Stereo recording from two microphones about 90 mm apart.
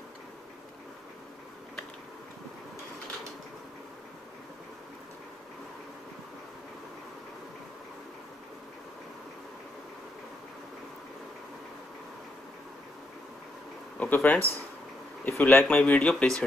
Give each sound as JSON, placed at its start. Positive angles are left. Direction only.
{"t": 13.9, "sound": "speech", "side_deg": 20}
{"t": 15.6, "sound": "speech", "side_deg": 10}